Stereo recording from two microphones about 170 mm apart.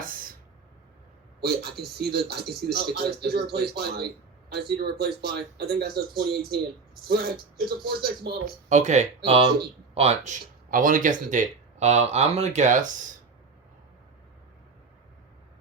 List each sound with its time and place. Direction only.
1.4 s speech: 70° right (ahead or behind)
7.6 s speech: 65° right (ahead or behind)
8.7 s speech: 45° right (ahead or behind)